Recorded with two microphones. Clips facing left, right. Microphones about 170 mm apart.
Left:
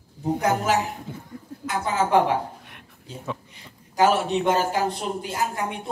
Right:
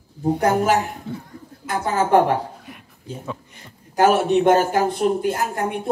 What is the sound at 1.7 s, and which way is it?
Speech, 50° right (ahead or behind).